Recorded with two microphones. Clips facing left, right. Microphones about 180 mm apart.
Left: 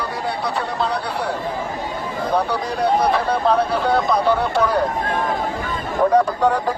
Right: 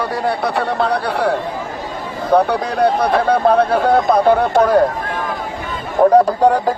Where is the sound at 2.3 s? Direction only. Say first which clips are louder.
Right 8 dB; 60° right (ahead or behind).